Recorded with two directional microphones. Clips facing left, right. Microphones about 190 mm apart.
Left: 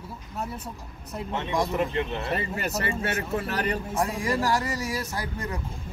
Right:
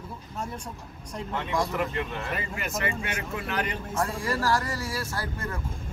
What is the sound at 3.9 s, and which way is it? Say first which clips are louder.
Speech: left 2 dB; 15° left (ahead or behind).